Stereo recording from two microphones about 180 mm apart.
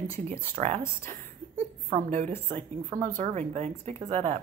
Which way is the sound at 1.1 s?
40° right (ahead or behind).